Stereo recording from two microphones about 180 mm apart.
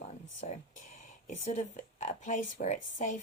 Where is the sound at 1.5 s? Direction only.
40° left (ahead or behind).